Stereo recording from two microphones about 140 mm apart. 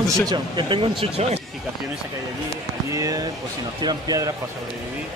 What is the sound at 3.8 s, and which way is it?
Speech, 30° right (ahead or behind).